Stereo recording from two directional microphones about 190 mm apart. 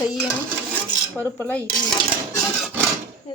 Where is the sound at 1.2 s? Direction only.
10° left (ahead or behind).